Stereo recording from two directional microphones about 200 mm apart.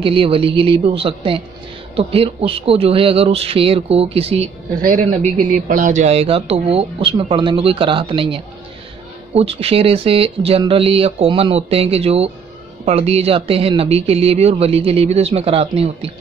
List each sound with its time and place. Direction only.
0.0 s speech: 25° right (ahead or behind)